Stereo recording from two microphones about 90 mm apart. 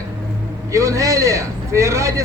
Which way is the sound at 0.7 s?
35° right (ahead or behind).